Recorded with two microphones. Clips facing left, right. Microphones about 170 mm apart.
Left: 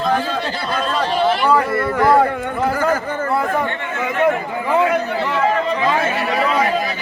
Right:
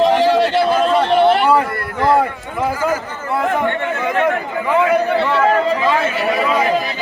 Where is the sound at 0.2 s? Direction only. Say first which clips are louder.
Right 9 dB; 80° right.